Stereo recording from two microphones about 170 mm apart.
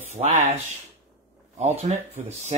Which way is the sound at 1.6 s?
40° right (ahead or behind).